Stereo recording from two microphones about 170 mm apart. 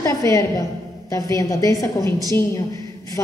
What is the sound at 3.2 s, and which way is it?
Speech, 20° left (ahead or behind).